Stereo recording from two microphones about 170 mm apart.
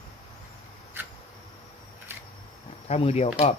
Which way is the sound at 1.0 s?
10° right (ahead or behind).